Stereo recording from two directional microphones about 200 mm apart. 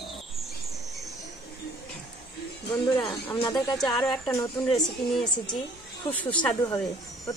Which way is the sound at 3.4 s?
25° left (ahead or behind).